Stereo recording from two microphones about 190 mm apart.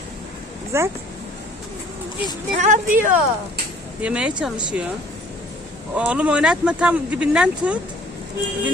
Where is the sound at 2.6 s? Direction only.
40° right (ahead or behind).